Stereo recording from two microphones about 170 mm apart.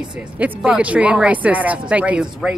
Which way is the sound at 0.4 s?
5° right (ahead or behind).